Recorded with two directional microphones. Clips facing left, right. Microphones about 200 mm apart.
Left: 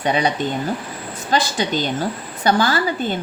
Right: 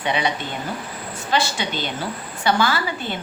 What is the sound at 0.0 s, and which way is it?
Speech, 40° left (ahead or behind).